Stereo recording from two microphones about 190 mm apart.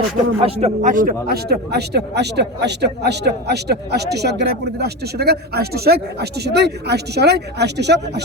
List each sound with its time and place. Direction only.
0.3 s speech: 35° right (ahead or behind); by 8.2 s 60° right (ahead or behind)